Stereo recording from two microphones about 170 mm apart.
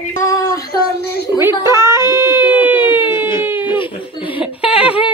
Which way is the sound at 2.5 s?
10° right (ahead or behind).